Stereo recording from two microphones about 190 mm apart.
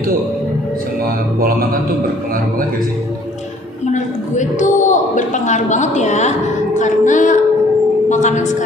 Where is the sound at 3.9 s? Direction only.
40° left (ahead or behind).